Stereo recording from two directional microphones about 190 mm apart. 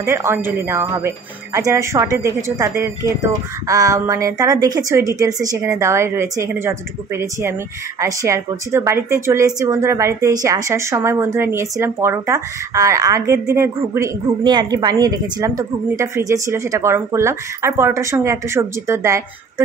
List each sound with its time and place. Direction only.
0.0 s speech: 15° right (ahead or behind)